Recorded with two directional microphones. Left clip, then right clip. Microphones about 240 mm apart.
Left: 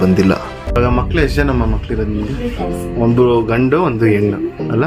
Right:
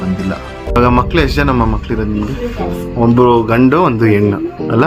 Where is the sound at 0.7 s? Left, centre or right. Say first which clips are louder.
Right 4 dB; centre.